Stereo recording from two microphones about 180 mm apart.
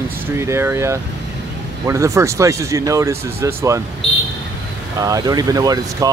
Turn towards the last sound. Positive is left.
turn(degrees=-20)  # may be behind; listen again after turning